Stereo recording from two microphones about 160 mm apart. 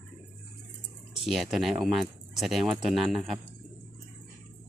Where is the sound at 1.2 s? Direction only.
Centre (ahead or behind).